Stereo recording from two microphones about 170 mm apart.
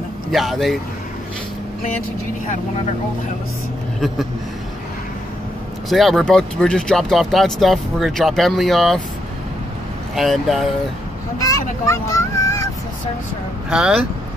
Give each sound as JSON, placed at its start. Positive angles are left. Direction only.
{"t": 0.3, "sound": "speech", "side_deg": 0}
{"t": 5.9, "sound": "speech", "side_deg": 0}
{"t": 10.1, "sound": "speech", "side_deg": 0}
{"t": 11.3, "sound": "speech", "side_deg": 20}
{"t": 13.7, "sound": "speech", "side_deg": -5}